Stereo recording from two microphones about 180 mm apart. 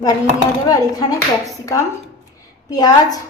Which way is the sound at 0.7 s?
20° left (ahead or behind).